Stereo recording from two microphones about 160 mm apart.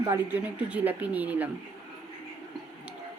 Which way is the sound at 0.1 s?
10° right (ahead or behind).